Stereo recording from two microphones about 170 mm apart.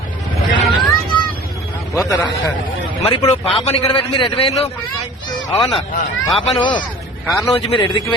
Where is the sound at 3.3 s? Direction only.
35° left (ahead or behind).